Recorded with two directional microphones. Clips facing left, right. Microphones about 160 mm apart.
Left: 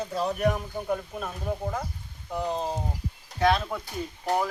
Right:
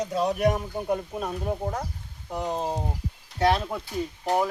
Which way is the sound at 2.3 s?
20° right (ahead or behind).